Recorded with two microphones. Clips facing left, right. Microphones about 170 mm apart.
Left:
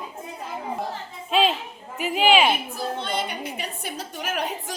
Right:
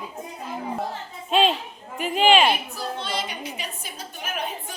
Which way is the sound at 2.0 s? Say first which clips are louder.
Right 1 dB; 5° left (ahead or behind).